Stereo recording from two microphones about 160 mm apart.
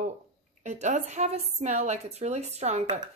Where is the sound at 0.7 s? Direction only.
50° right (ahead or behind).